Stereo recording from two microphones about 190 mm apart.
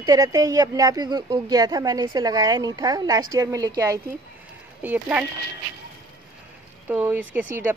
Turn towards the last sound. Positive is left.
turn(degrees=-10)  # may be behind; listen again after turning